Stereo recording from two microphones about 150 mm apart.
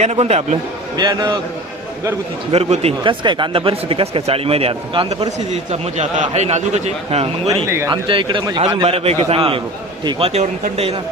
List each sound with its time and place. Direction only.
0.0 s a man's voice: 45° right (ahead or behind)
0.9 s a man's voice: 25° right (ahead or behind)
2.5 s a man's voice: 45° right (ahead or behind)
7.9 s speech: 35° right (ahead or behind)